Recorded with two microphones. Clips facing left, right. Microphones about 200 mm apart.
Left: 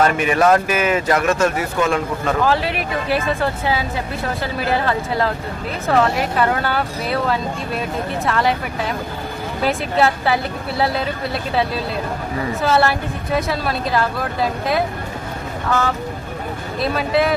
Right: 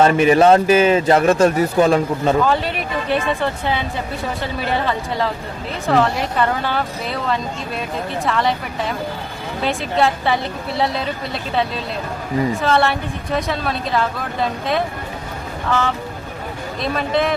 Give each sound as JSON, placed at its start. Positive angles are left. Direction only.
{"t": 0.0, "sound": "speech", "side_deg": -30}
{"t": 2.5, "sound": "speech", "side_deg": 0}
{"t": 9.6, "sound": "speech", "side_deg": 0}
{"t": 12.6, "sound": "speech", "side_deg": 5}
{"t": 16.8, "sound": "speech", "side_deg": 5}